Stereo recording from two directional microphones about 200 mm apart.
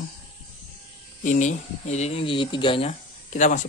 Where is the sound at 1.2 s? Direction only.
40° left (ahead or behind).